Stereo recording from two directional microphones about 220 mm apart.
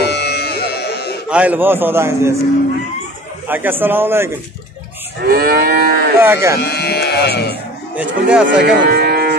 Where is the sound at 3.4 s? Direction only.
10° right (ahead or behind).